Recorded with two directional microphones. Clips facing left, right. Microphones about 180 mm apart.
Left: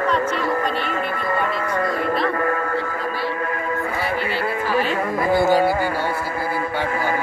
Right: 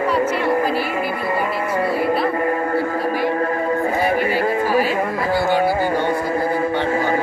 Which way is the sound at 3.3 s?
35° right (ahead or behind).